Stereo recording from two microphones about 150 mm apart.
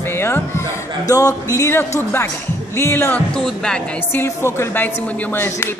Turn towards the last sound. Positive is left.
turn(degrees=15)  # may be behind; listen again after turning